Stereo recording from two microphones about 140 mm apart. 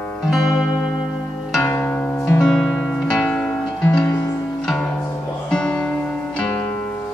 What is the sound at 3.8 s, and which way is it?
Music, 15° left (ahead or behind).